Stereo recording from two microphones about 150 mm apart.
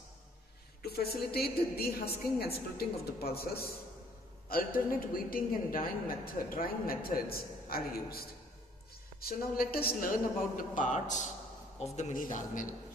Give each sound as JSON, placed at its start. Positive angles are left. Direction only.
{"t": 0.8, "sound": "a woman's voice", "side_deg": 90}
{"t": 4.5, "sound": "a woman's voice", "side_deg": 75}